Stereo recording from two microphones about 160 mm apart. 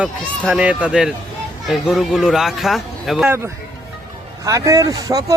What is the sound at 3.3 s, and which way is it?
Speech, 15° right (ahead or behind).